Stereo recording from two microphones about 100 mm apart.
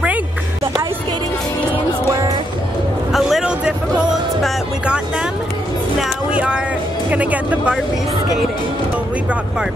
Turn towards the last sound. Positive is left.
turn(degrees=-15)  # may be behind; listen again after turning